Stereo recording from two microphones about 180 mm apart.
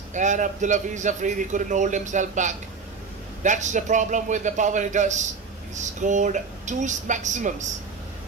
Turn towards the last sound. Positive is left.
turn(degrees=-40)  # may be behind; listen again after turning